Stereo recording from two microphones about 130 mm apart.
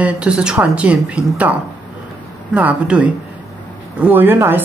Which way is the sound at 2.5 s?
10° right (ahead or behind).